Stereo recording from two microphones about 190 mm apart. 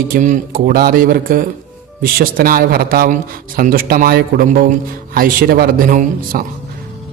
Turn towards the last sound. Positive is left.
turn(degrees=-45)  # may be behind; listen again after turning